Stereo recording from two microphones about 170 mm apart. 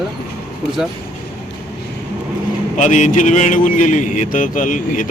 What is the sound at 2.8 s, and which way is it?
Speech, 45° left (ahead or behind).